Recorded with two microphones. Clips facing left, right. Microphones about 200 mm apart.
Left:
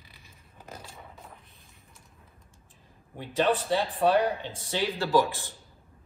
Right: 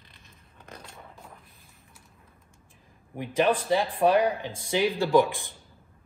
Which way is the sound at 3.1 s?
15° right (ahead or behind).